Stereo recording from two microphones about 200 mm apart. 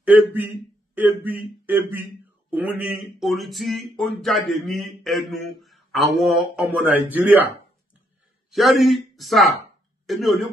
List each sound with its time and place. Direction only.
0.0 s speech: 10° right (ahead or behind)